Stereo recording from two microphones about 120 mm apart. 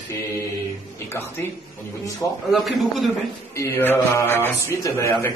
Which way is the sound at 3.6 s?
20° left (ahead or behind).